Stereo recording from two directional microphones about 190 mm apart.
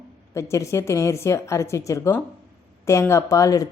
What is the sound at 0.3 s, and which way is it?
Speech, 15° left (ahead or behind).